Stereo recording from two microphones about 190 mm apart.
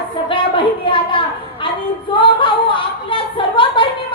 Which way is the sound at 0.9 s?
25° left (ahead or behind).